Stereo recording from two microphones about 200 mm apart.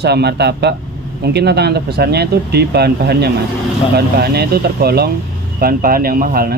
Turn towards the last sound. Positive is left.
turn(degrees=-45)  # may be behind; listen again after turning